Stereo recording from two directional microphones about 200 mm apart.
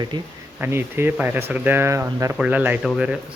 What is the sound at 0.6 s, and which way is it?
Speech, 10° right (ahead or behind).